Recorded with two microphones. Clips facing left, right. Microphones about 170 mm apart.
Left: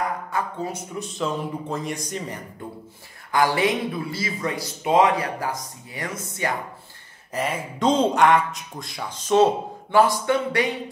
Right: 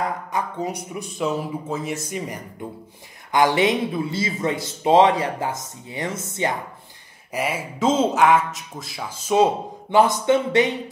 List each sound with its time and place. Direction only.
0.3 s speech: 15° right (ahead or behind)
3.3 s speech: 20° right (ahead or behind)
7.3 s speech: 10° right (ahead or behind)